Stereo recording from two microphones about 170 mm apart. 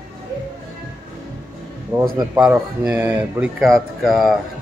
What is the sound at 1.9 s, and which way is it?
Speech, 20° right (ahead or behind).